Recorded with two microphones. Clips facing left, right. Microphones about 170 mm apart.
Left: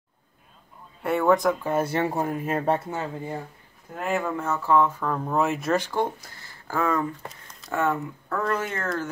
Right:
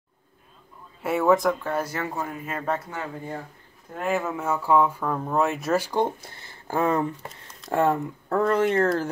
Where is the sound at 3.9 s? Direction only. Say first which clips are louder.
Even; centre (ahead or behind).